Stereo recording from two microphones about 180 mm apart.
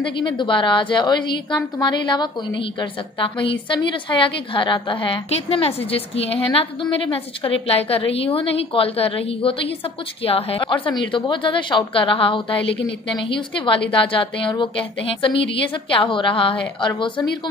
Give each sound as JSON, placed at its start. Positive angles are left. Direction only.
{"t": 0.0, "sound": "a woman's voice", "side_deg": 25}